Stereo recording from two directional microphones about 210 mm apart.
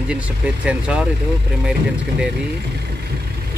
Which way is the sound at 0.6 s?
5° right (ahead or behind).